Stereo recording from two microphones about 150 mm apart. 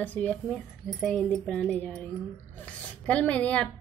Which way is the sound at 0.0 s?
10° left (ahead or behind).